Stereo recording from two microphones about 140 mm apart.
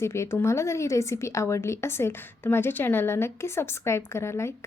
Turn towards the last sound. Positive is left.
turn(degrees=20)  # may be behind; listen again after turning